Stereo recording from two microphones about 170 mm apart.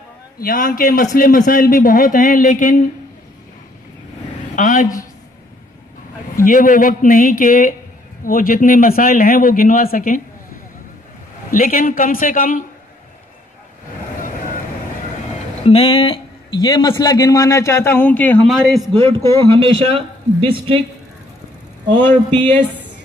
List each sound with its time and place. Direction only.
0.4 s a man's voice: 55° left (ahead or behind)
4.6 s a man's voice: 45° left (ahead or behind)
6.3 s a man's voice: 50° left (ahead or behind)
11.5 s a man's voice: 55° left (ahead or behind)
15.6 s a man's voice: 35° left (ahead or behind); by 18.9 s centre (ahead or behind)
19.4 s a man's voice: 30° right (ahead or behind)
21.9 s speech: 10° left (ahead or behind)